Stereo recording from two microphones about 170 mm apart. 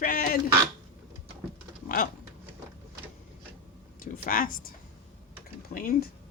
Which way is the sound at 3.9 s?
55° left (ahead or behind).